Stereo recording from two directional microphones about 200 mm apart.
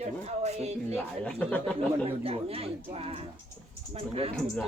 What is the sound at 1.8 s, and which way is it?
Speech, 30° right (ahead or behind).